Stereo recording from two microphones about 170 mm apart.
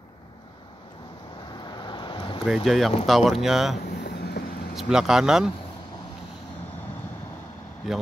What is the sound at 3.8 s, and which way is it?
Vehicle, 75° left (ahead or behind).